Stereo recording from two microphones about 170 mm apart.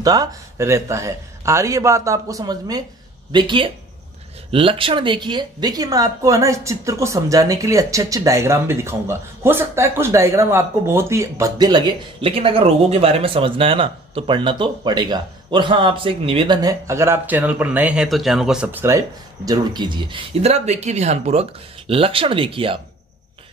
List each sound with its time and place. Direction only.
0.0 s speech: 20° right (ahead or behind)